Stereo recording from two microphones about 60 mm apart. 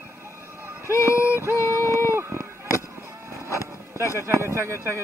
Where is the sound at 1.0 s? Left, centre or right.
Left.